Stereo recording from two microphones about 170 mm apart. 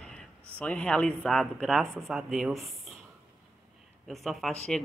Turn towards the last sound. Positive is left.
turn(degrees=0)  # may be behind; listen again after turning